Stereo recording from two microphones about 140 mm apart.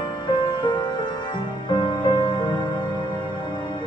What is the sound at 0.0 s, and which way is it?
Music, 35° left (ahead or behind).